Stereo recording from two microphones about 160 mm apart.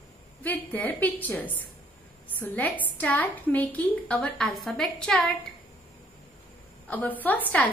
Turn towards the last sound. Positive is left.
turn(degrees=10)  # may be behind; listen again after turning